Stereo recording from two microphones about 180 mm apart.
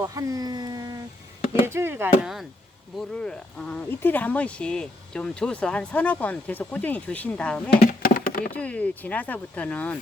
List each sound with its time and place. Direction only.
0.0 s speech: 20° right (ahead or behind)
1.6 s chop: 15° right (ahead or behind)
2.2 s speech: centre (ahead or behind)
7.7 s a sound: 55° left (ahead or behind)
8.5 s speech: 5° left (ahead or behind)